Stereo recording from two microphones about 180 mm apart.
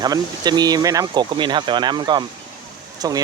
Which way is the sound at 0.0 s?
20° right (ahead or behind).